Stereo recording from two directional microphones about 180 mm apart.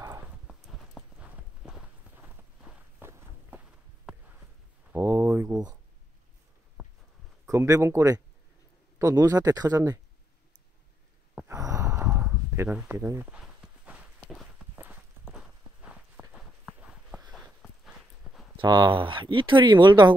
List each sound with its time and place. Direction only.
0.0 s clip-clop: 15° right (ahead or behind)
0.5 s clip-clop: centre (ahead or behind)
4.9 s a sound: 15° right (ahead or behind)
7.4 s speech: 15° right (ahead or behind)
11.3 s sigh: 15° right (ahead or behind)
12.1 s walk: 5° right (ahead or behind)
17.3 s horse: 5° right (ahead or behind)
18.6 s speech: 25° right (ahead or behind)